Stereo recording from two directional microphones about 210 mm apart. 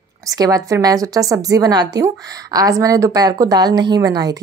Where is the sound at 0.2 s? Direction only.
15° right (ahead or behind).